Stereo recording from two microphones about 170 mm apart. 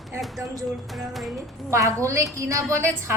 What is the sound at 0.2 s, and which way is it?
Music, centre (ahead or behind).